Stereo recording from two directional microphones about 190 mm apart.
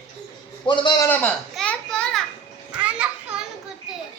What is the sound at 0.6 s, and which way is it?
Speech, 25° left (ahead or behind).